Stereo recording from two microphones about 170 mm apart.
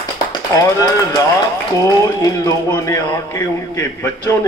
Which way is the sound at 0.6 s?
20° left (ahead or behind).